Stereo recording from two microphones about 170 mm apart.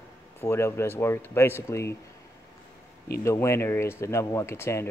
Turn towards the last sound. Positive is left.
turn(degrees=15)  # may be behind; listen again after turning